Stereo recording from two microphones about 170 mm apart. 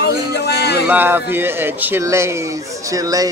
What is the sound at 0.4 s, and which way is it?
Music, 70° left (ahead or behind).